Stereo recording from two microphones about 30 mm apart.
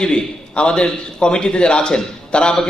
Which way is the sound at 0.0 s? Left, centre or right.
Left.